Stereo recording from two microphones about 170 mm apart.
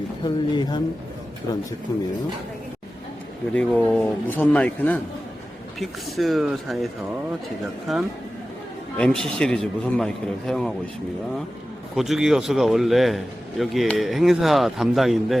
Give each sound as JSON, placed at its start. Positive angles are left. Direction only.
{"t": 0.5, "sound": "a man's voice", "side_deg": 25}
{"t": 3.5, "sound": "a man's voice", "side_deg": 5}
{"t": 7.9, "sound": "a man's voice", "side_deg": 0}
{"t": 11.9, "sound": "a man's voice", "side_deg": 0}